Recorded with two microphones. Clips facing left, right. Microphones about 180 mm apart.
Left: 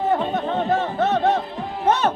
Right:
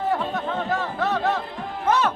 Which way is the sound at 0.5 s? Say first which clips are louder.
Left 6 dB; 35° left (ahead or behind).